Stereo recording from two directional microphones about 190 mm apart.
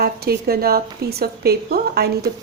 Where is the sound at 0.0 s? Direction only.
55° right (ahead or behind).